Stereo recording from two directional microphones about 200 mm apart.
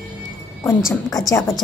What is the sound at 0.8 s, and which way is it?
Speech, centre (ahead or behind).